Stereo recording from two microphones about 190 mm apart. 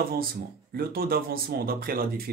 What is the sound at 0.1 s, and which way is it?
Speech, 50° right (ahead or behind).